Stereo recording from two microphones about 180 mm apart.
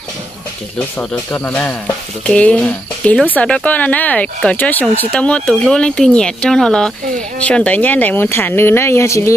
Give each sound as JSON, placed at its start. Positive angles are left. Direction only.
{"t": 0.7, "sound": "speech", "side_deg": 10}